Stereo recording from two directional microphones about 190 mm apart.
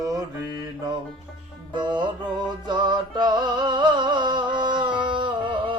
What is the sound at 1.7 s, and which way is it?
Music, 25° right (ahead or behind).